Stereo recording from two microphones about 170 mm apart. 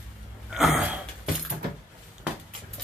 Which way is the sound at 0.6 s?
5° right (ahead or behind).